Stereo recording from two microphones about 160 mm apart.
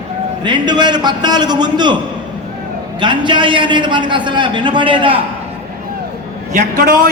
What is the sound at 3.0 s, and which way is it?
A man's voice, 30° right (ahead or behind).